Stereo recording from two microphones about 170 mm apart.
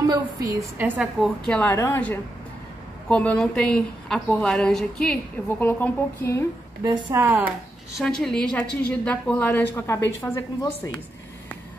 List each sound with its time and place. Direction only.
0.0 s a woman's voice: 20° right (ahead or behind); by 6.4 s 15° left (ahead or behind)
6.8 s a woman's voice: 25° right (ahead or behind)
7.2 s speech: 15° right (ahead or behind)
8.0 s a woman's voice: 5° left (ahead or behind)